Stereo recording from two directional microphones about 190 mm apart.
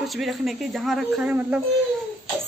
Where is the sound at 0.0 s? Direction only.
Centre (ahead or behind).